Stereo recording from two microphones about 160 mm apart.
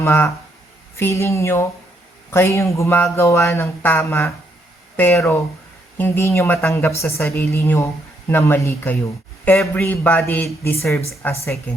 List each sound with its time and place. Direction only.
0.0 s speech: 15° left (ahead or behind)